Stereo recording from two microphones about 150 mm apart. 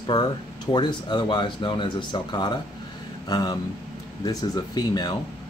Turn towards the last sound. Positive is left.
turn(degrees=30)  # may be behind; listen again after turning